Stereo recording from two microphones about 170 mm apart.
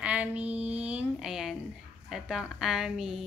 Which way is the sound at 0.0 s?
5° right (ahead or behind).